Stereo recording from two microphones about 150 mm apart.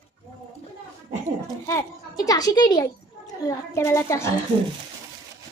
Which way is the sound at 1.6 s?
20° left (ahead or behind).